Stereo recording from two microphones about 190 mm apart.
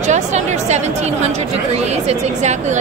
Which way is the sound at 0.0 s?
40° right (ahead or behind).